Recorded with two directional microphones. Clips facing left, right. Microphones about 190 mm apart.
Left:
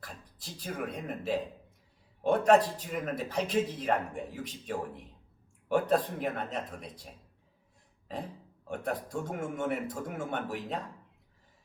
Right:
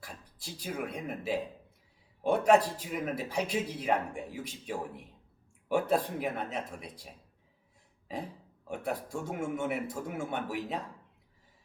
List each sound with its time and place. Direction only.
0.0 s a man's voice: 10° right (ahead or behind)
8.1 s a man's voice: 10° right (ahead or behind)